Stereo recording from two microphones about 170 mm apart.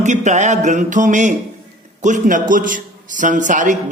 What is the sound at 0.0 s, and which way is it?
A man's voice, 45° right (ahead or behind).